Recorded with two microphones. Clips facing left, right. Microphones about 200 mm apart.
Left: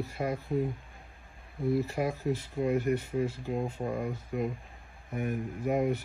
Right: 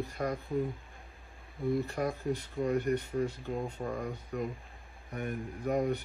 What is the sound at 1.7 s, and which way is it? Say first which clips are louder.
Speech: left 2 dB; 5° left (ahead or behind).